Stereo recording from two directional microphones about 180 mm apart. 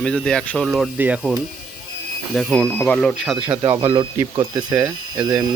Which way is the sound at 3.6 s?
15° right (ahead or behind).